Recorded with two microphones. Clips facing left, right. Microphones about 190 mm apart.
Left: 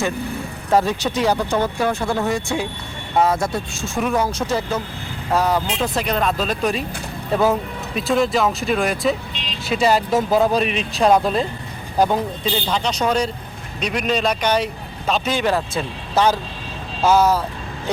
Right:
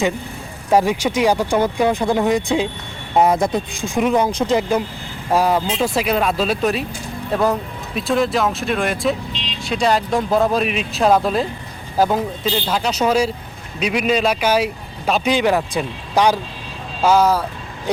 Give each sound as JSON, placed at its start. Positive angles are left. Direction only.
{"t": 0.7, "sound": "a man's voice", "side_deg": -10}